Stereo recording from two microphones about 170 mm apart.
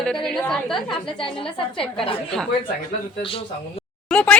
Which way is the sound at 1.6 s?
30° left (ahead or behind).